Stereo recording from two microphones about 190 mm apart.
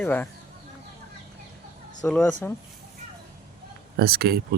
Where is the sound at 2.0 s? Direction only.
5° left (ahead or behind).